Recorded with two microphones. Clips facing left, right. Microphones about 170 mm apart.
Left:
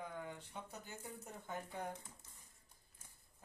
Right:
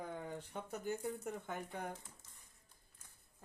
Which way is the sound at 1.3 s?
70° right (ahead or behind).